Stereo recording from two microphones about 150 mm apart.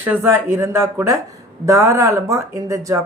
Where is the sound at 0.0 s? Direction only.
15° right (ahead or behind).